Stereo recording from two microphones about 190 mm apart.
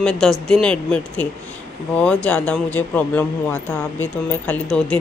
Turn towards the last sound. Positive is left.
turn(degrees=5)  # may be behind; listen again after turning